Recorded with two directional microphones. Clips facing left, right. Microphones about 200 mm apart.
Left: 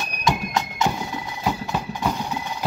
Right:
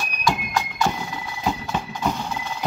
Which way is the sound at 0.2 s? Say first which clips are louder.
Left 1 dB; 20° left (ahead or behind).